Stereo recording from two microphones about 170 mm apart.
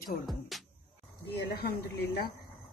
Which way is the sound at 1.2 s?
70° left (ahead or behind).